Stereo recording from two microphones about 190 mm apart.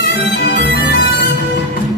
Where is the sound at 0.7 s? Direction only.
55° left (ahead or behind).